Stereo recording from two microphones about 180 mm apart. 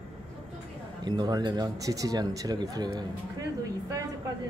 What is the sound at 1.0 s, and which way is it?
Speech, 25° right (ahead or behind).